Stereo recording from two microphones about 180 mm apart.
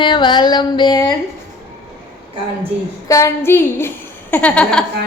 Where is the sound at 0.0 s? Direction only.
25° left (ahead or behind).